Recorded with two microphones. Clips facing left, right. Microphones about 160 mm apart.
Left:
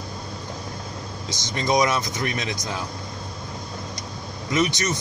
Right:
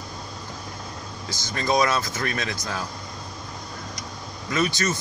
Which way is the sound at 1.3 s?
20° left (ahead or behind).